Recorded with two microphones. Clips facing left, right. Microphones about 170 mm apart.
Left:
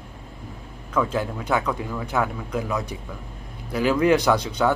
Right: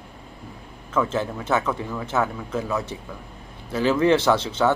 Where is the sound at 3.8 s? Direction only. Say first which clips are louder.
Even; 25° right (ahead or behind).